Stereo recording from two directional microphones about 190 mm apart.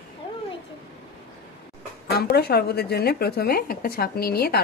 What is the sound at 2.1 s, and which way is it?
Speech, 55° left (ahead or behind).